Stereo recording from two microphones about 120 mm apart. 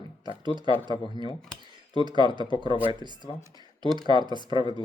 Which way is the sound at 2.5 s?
40° left (ahead or behind).